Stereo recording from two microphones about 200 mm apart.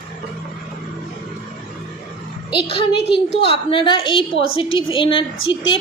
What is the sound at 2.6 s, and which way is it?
A woman's voice, 25° left (ahead or behind).